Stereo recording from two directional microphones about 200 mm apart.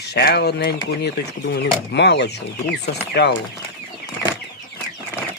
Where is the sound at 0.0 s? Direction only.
55° left (ahead or behind).